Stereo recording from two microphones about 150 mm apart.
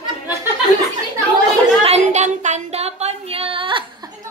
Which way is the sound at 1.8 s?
45° right (ahead or behind).